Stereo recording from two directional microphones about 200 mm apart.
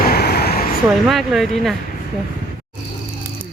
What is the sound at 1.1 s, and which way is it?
Speech, centre (ahead or behind).